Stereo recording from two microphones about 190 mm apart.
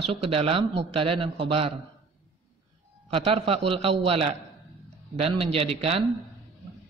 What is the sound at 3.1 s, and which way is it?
A man's voice, 30° right (ahead or behind).